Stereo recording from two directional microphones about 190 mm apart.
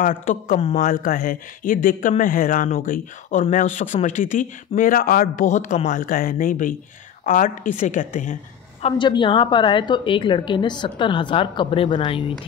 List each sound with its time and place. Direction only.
0.0 s a woman's voice: 45° left (ahead or behind)
8.8 s a woman's voice: 25° left (ahead or behind)